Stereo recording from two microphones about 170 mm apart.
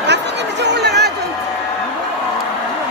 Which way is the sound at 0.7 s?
80° right.